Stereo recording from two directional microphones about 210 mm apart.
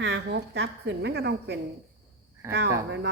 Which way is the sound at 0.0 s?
55° right (ahead or behind).